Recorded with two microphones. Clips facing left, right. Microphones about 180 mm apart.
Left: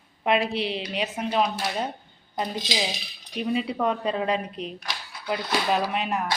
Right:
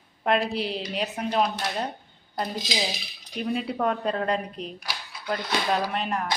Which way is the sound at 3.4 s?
Centre (ahead or behind).